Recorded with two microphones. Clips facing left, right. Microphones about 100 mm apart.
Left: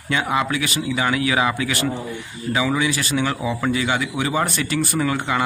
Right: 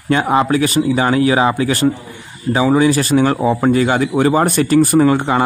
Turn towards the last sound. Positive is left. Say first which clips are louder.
# right 9 dB
turn(degrees=-35)  # may be behind; listen again after turning